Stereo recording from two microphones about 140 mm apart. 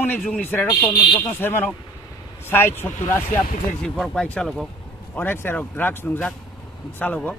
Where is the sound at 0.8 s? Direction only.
30° left (ahead or behind).